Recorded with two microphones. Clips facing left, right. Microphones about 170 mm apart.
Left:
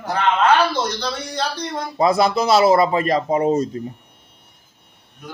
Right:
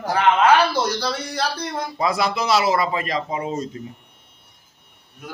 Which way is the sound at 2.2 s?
30° left (ahead or behind).